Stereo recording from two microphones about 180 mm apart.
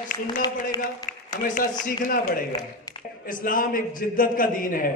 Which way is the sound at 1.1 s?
45° left (ahead or behind).